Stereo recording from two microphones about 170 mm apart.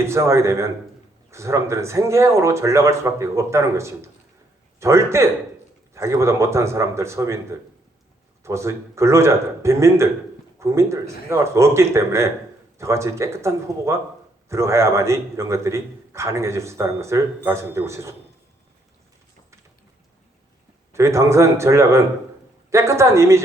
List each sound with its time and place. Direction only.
0.0 s a man's voice: 15° right (ahead or behind)
8.4 s a man's voice: 15° right (ahead or behind)
20.9 s a man's voice: 15° right (ahead or behind)